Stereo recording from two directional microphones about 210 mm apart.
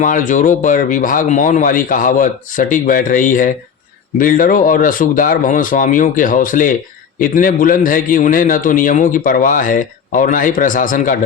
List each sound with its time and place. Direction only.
0.0 s a man's voice: 40° left (ahead or behind)